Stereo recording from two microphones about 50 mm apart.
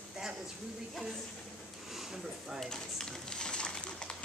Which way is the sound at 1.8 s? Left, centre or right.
Centre.